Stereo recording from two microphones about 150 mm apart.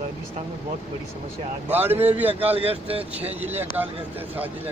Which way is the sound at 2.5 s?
40° right (ahead or behind).